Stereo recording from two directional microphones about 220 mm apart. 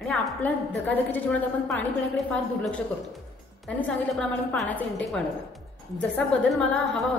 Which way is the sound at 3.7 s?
5° left (ahead or behind).